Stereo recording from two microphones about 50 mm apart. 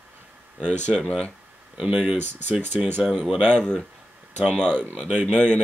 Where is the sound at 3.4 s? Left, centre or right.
Centre.